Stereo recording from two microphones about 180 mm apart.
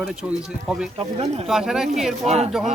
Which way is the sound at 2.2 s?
35° right (ahead or behind).